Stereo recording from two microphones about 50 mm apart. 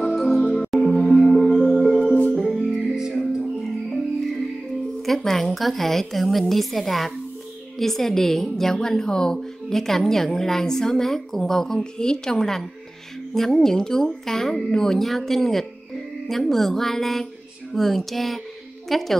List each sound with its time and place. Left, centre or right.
0.0 s music: centre
2.0 s music: left
2.3 s music: centre
5.0 s a woman's voice: centre